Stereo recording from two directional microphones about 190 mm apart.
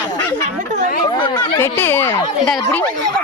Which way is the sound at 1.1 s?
25° left (ahead or behind).